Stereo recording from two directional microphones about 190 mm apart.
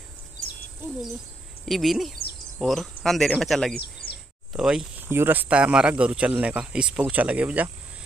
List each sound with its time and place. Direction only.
1.7 s speech: centre (ahead or behind)
4.0 s a sound: 50° left (ahead or behind)
4.5 s speech: 5° right (ahead or behind)